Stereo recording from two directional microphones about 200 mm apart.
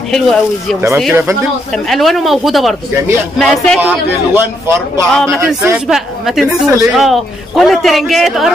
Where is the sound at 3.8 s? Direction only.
10° right (ahead or behind).